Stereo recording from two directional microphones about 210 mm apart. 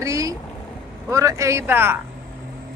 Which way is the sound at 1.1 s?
15° right (ahead or behind).